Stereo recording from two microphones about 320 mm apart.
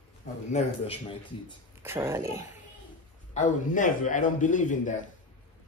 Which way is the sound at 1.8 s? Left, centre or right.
Centre.